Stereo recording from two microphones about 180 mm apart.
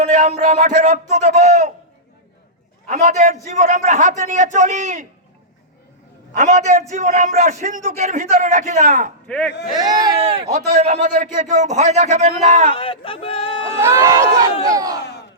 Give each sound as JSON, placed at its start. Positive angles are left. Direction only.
{"t": 0.0, "sound": "speech", "side_deg": -40}
{"t": 2.9, "sound": "a man's voice", "side_deg": -40}
{"t": 6.3, "sound": "a man's voice", "side_deg": -45}
{"t": 9.2, "sound": "speech", "side_deg": 5}
{"t": 9.7, "sound": "speech", "side_deg": -20}
{"t": 10.8, "sound": "speech", "side_deg": -45}
{"t": 12.7, "sound": "speech", "side_deg": 30}
{"t": 13.7, "sound": "speech", "side_deg": -15}